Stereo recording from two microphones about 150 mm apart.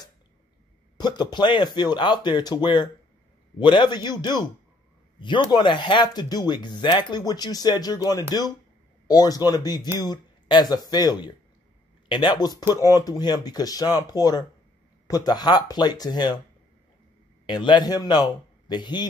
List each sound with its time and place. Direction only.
0.9 s speech: 30° left (ahead or behind)
17.5 s speech: 30° left (ahead or behind)